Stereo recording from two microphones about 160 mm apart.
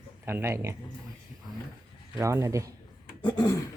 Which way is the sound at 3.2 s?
25° left (ahead or behind).